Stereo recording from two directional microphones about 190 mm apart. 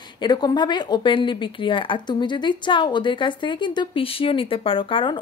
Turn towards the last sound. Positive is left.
turn(degrees=25)  # may be behind; listen again after turning